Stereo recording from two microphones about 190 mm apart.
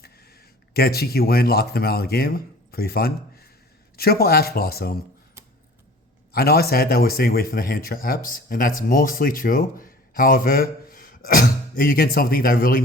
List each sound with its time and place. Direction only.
0.7 s speech: 55° left (ahead or behind)
6.3 s speech: 55° left (ahead or behind)